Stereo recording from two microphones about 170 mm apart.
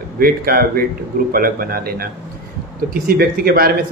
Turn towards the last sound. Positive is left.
turn(degrees=-65)  # may be behind; listen again after turning